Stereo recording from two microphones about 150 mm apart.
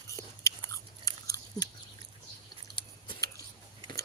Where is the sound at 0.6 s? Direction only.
20° left (ahead or behind).